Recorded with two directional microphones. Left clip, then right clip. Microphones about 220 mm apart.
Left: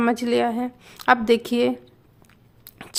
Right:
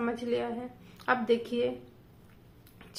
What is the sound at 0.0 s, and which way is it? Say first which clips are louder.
A woman's voice: left 11 dB; 45° left (ahead or behind).